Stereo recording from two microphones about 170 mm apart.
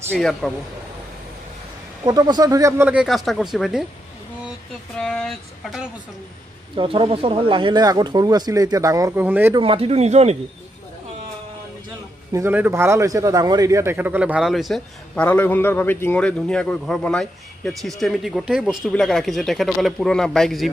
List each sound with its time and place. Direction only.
0.1 s a man's voice: 5° left (ahead or behind)
2.0 s speech: 25° right (ahead or behind)
2.9 s a man's voice: 5° right (ahead or behind)
4.9 s a man's voice: 5° left (ahead or behind)
6.8 s speech: 30° right (ahead or behind)
9.2 s a man's voice: 10° right (ahead or behind)
9.6 s a man's voice: 35° right (ahead or behind)
12.3 s a man's voice: 15° right (ahead or behind); by 20.7 s centre (ahead or behind)